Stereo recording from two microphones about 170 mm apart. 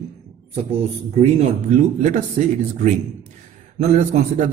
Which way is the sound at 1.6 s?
45° right (ahead or behind).